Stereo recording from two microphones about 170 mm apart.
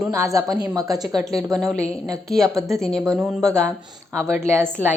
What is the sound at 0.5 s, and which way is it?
Speech, 20° right (ahead or behind).